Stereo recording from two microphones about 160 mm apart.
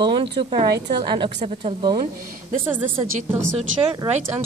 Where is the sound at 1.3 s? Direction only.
45° right (ahead or behind).